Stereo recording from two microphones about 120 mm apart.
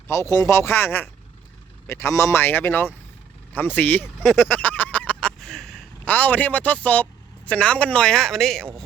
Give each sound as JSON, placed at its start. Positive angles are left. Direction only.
{"t": 0.3, "sound": "speech", "side_deg": 25}
{"t": 4.4, "sound": "a sound", "side_deg": 15}
{"t": 6.1, "sound": "speech", "side_deg": 15}